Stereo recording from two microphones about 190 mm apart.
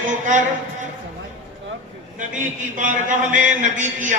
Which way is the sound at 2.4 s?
40° right (ahead or behind).